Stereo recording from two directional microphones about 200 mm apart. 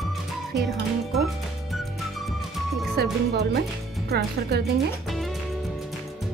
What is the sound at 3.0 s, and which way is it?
Speech, 55° right (ahead or behind).